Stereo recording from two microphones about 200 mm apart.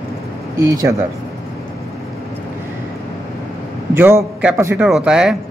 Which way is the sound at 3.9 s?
10° right (ahead or behind).